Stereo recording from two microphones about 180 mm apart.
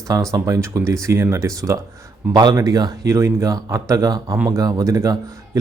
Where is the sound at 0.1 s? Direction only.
20° right (ahead or behind).